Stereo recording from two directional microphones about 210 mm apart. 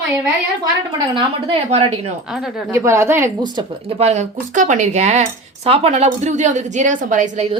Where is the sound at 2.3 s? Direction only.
Centre (ahead or behind).